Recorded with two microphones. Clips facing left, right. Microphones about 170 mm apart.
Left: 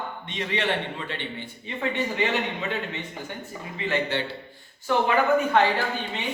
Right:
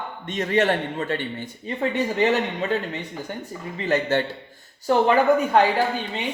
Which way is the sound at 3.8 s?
45° right (ahead or behind).